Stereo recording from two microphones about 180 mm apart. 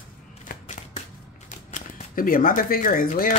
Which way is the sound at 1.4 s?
45° left (ahead or behind).